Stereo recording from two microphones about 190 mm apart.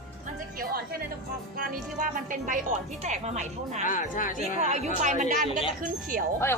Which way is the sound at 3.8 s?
45° left (ahead or behind).